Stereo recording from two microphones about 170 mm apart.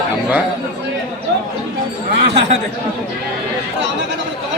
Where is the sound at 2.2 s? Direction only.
90° right.